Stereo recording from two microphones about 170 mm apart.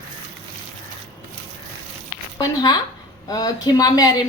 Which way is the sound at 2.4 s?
25° left (ahead or behind).